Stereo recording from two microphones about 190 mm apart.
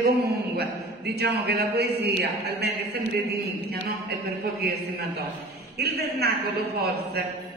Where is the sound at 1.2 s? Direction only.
60° right (ahead or behind).